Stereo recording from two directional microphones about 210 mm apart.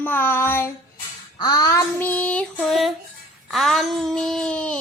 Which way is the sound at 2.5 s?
Centre (ahead or behind).